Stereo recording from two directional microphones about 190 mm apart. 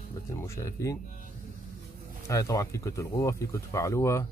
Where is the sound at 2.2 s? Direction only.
15° left (ahead or behind).